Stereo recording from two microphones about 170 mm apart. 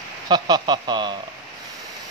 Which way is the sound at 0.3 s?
25° right (ahead or behind).